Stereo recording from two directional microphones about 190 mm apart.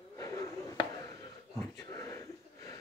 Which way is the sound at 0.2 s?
20° left (ahead or behind).